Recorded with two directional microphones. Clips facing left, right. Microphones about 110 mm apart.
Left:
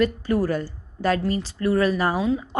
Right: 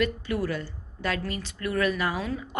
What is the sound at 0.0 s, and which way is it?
A woman's voice, 40° left (ahead or behind).